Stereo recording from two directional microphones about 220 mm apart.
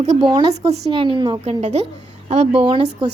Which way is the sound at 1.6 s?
30° right (ahead or behind).